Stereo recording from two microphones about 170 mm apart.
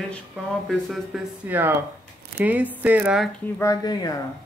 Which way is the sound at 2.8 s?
10° right (ahead or behind).